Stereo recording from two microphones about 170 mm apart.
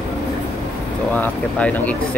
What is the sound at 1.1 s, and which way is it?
Speech, 10° left (ahead or behind).